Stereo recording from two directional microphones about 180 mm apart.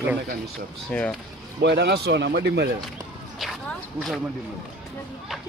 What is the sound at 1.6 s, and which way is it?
Speech, 70° right (ahead or behind).